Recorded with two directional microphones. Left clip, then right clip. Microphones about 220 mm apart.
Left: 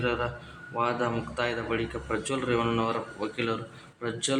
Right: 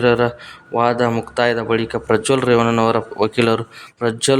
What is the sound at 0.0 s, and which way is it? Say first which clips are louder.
Speech: right 14 dB; 50° right (ahead or behind).